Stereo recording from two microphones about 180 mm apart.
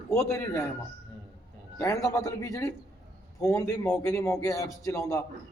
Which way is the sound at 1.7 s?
15° left (ahead or behind).